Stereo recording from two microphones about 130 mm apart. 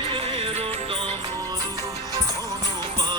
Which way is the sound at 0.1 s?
45° right (ahead or behind).